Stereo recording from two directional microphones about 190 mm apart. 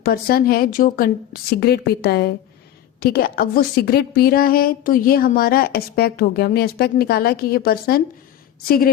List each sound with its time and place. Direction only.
0.0 s a woman's voice: 50° left (ahead or behind)